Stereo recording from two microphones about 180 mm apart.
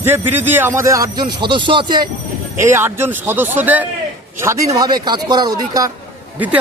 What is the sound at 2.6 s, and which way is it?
Speech, 15° right (ahead or behind).